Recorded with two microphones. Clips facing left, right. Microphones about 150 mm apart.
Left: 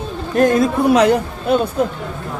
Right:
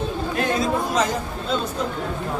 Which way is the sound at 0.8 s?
65° left (ahead or behind).